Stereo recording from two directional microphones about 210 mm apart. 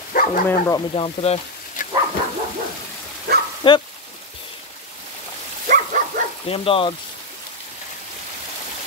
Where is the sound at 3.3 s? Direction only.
50° right (ahead or behind).